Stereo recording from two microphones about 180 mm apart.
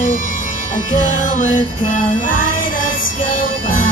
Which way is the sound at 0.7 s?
45° left (ahead or behind).